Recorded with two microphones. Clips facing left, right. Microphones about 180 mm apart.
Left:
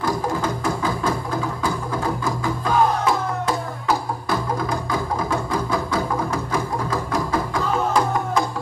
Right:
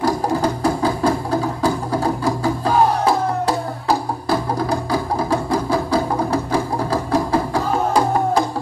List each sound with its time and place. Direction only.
0.0 s music: 35° right (ahead or behind)